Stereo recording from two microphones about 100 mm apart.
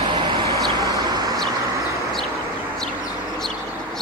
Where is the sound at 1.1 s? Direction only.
35° right (ahead or behind).